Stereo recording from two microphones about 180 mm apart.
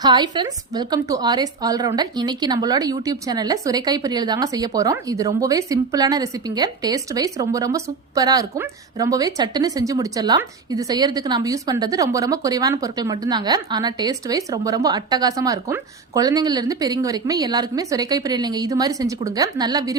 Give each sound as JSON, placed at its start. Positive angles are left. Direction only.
{"t": 0.0, "sound": "a woman's voice", "side_deg": -25}